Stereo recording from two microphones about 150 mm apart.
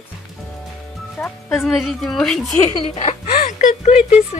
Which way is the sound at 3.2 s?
60° left (ahead or behind).